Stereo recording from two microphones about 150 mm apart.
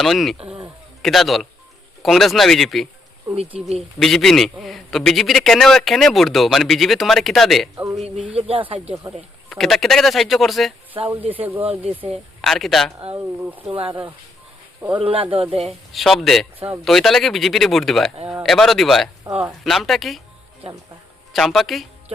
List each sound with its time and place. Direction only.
0.0 s a man's voice: centre (ahead or behind)
3.3 s speech: 15° right (ahead or behind)
4.0 s a man's voice: centre (ahead or behind)
7.9 s speech: 45° right (ahead or behind)
8.2 s speech: 5° right (ahead or behind)
9.5 s a man's voice: centre (ahead or behind)
11.3 s a man's voice: 10° right (ahead or behind)
13.7 s speech: 40° right (ahead or behind)
14.9 s speech: 35° right (ahead or behind)
15.9 s a man's voice: centre (ahead or behind)
19.3 s speech: 15° right (ahead or behind)
19.6 s a man's voice: centre (ahead or behind)
21.3 s a man's voice: centre (ahead or behind)